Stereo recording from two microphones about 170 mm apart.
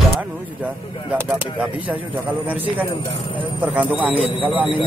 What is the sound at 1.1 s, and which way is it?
Speech, 10° right (ahead or behind).